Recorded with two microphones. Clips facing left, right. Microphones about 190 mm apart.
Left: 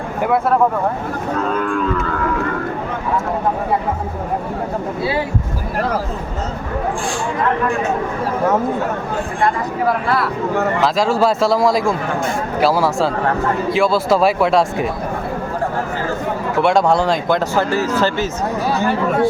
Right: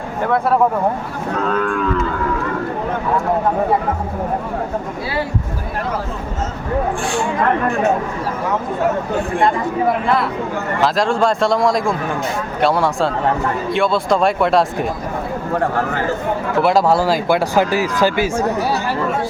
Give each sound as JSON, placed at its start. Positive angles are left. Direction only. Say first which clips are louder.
{"t": 9.8, "sound": "speech", "louder": "even", "side_deg": -20}
{"t": 10.8, "sound": "a man's voice", "louder": "right 2 dB", "side_deg": 0}
{"t": 16.6, "sound": "speech", "louder": "even", "side_deg": 0}